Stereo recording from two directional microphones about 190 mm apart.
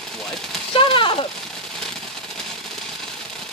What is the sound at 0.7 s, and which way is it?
Speech, 25° left (ahead or behind).